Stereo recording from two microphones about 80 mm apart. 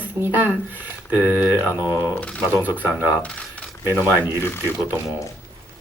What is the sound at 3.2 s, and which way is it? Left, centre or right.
Coin, centre.